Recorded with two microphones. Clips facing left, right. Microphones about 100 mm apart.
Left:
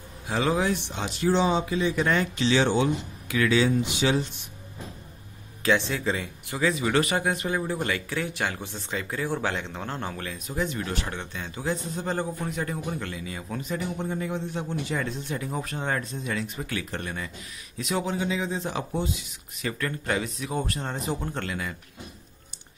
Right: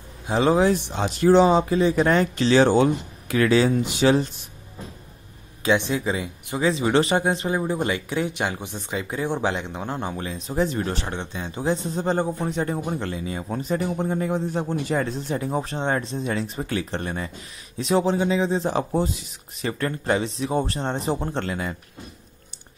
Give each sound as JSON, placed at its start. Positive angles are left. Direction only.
{"t": 0.3, "sound": "speech", "side_deg": -30}
{"t": 5.6, "sound": "speech", "side_deg": -20}